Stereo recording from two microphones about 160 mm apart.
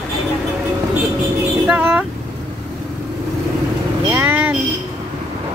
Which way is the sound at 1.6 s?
5° right (ahead or behind).